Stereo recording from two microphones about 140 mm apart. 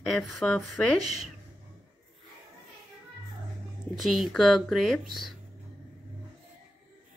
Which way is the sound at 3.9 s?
Centre (ahead or behind).